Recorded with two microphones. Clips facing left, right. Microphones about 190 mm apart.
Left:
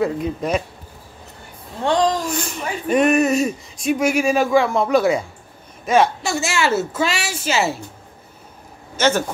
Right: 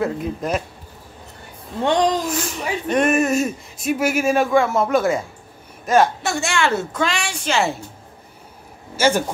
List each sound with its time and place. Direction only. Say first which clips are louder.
0.0 s speech: left 2 dB; centre (ahead or behind)
1.9 s speech: even; 20° right (ahead or behind)
2.2 s speech: right 1 dB; centre (ahead or behind)
8.9 s speech: even; 10° right (ahead or behind)